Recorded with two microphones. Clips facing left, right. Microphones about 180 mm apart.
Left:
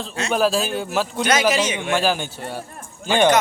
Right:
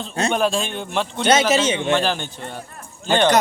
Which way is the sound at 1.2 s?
25° right (ahead or behind).